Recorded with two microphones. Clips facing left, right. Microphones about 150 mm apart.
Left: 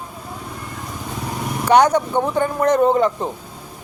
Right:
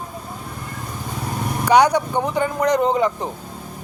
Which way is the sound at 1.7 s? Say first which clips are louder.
Left 1 dB; 10° right (ahead or behind).